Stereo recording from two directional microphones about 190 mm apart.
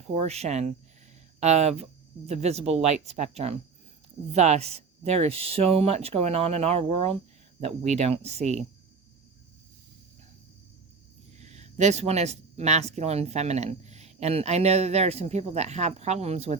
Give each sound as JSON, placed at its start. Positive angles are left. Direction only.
{"t": 0.1, "sound": "speech", "side_deg": -35}
{"t": 11.3, "sound": "speech", "side_deg": -35}